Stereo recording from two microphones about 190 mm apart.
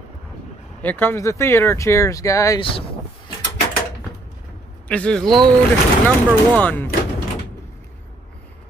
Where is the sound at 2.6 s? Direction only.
25° left (ahead or behind).